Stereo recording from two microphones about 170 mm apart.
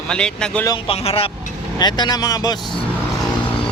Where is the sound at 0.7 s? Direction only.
35° left (ahead or behind).